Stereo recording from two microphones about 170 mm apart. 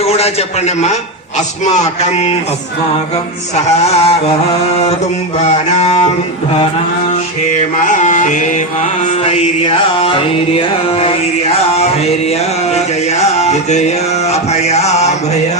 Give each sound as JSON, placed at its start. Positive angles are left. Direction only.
{"t": 0.0, "sound": "a man's voice", "side_deg": 35}
{"t": 1.6, "sound": "music", "side_deg": 40}
{"t": 3.5, "sound": "music", "side_deg": 40}
{"t": 5.5, "sound": "music", "side_deg": 40}
{"t": 7.8, "sound": "music", "side_deg": 45}
{"t": 12.7, "sound": "music", "side_deg": 40}